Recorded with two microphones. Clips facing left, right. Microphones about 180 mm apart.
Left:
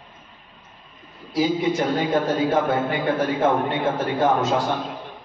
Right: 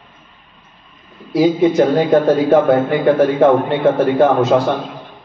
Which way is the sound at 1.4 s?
50° right (ahead or behind).